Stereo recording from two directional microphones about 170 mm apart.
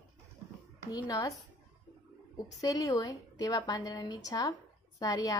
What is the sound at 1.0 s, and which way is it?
Speech, 20° left (ahead or behind).